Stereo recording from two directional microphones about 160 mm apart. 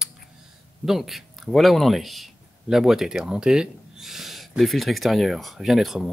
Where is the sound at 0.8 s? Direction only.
Centre (ahead or behind).